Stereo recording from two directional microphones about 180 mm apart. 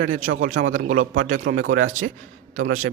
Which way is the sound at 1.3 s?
65° right (ahead or behind).